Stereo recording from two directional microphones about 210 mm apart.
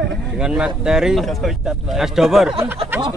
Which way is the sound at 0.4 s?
5° right (ahead or behind).